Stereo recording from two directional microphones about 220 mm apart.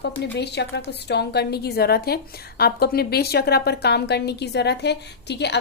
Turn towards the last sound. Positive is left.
turn(degrees=50)  # may be behind; listen again after turning